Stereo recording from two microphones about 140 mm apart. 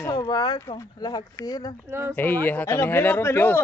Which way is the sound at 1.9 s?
15° right (ahead or behind).